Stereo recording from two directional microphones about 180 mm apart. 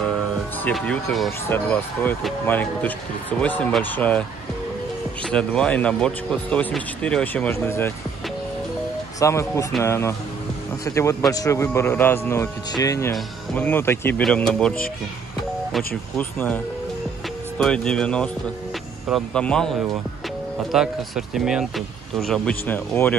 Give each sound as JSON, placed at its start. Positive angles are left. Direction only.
{"t": 0.7, "sound": "speech", "side_deg": 5}
{"t": 5.3, "sound": "speech", "side_deg": 5}
{"t": 9.2, "sound": "speech", "side_deg": 15}
{"t": 16.2, "sound": "speech", "side_deg": 10}
{"t": 17.6, "sound": "speech", "side_deg": 5}
{"t": 20.7, "sound": "speech", "side_deg": -5}